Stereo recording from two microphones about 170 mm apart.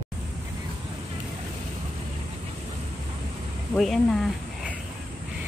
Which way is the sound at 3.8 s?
Centre (ahead or behind).